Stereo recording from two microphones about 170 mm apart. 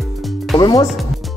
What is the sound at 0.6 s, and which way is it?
Speech, 20° left (ahead or behind).